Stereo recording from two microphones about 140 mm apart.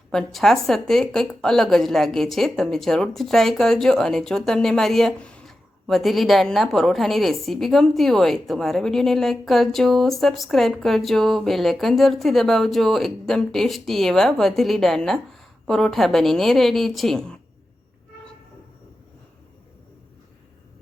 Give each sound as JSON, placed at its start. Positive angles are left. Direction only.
{"t": 0.1, "sound": "a woman's voice", "side_deg": 5}